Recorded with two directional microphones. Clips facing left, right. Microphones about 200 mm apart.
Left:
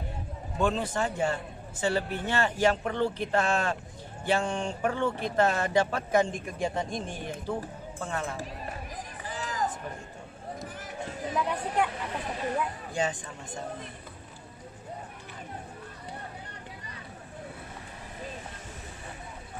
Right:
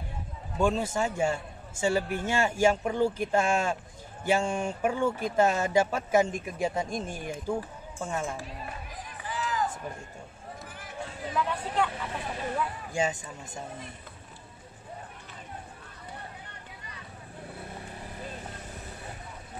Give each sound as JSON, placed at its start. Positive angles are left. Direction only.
{"t": 0.6, "sound": "speech", "side_deg": -10}
{"t": 9.3, "sound": "music", "side_deg": 40}
{"t": 11.3, "sound": "speech", "side_deg": 10}
{"t": 12.9, "sound": "speech", "side_deg": -10}